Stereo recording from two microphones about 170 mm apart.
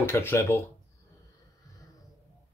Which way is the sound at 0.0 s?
15° left (ahead or behind).